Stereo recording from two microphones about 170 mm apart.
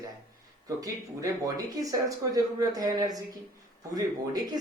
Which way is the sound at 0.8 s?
20° right (ahead or behind).